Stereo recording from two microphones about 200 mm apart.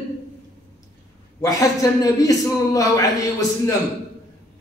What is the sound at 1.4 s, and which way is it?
Speech, 15° left (ahead or behind).